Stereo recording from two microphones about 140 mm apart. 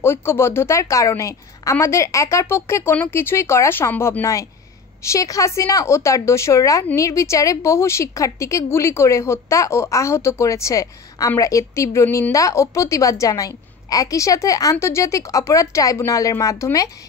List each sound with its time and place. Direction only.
0.0 s a woman's voice: 15° left (ahead or behind)